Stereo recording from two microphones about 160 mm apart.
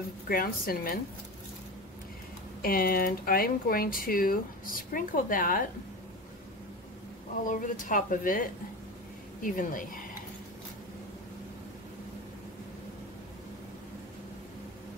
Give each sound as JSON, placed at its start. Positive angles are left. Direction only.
{"t": 0.3, "sound": "speech", "side_deg": 65}
{"t": 2.6, "sound": "speech", "side_deg": 70}
{"t": 7.4, "sound": "speech", "side_deg": 55}